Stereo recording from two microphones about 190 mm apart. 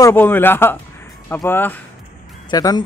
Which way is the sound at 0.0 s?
10° left (ahead or behind).